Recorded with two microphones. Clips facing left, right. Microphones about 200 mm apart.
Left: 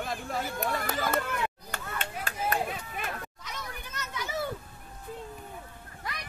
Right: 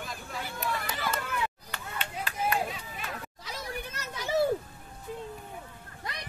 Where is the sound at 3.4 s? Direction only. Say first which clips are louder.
Right 4 dB; 30° right (ahead or behind).